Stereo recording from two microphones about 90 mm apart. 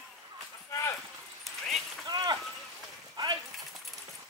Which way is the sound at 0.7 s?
35° left (ahead or behind).